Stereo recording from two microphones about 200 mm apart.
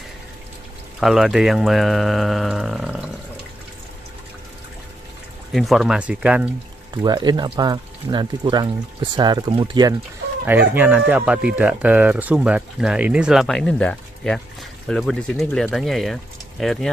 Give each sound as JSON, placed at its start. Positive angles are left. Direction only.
{"t": 0.9, "sound": "speech", "side_deg": 0}
{"t": 5.5, "sound": "speech", "side_deg": 0}
{"t": 7.0, "sound": "speech", "side_deg": -20}
{"t": 10.4, "sound": "speech", "side_deg": -10}